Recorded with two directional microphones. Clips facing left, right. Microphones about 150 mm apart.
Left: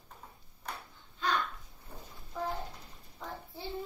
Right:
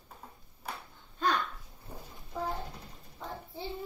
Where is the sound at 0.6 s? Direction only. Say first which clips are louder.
Right 1 dB; 5° right (ahead or behind).